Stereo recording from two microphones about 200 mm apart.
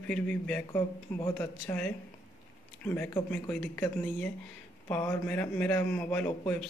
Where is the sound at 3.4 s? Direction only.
10° left (ahead or behind).